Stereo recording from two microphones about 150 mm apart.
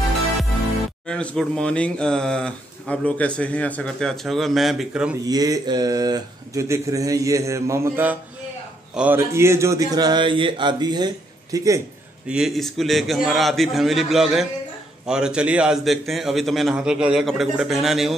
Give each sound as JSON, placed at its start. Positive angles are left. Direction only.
{"t": 1.0, "sound": "speech", "side_deg": 5}
{"t": 5.2, "sound": "speech", "side_deg": -25}
{"t": 12.3, "sound": "speech", "side_deg": -5}